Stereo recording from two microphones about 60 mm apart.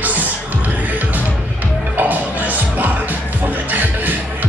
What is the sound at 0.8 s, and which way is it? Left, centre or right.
Music, right.